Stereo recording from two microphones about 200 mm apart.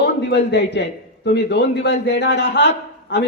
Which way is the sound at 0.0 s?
60° left (ahead or behind).